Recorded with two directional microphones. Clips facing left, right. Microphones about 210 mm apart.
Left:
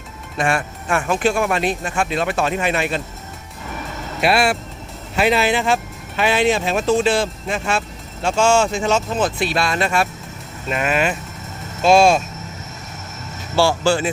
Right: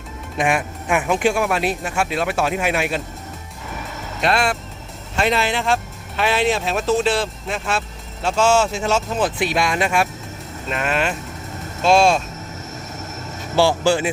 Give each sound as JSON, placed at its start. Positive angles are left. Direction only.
{"t": 0.3, "sound": "speech", "side_deg": -15}
{"t": 4.2, "sound": "speech", "side_deg": 10}
{"t": 10.7, "sound": "speech", "side_deg": 5}
{"t": 13.6, "sound": "speech", "side_deg": -15}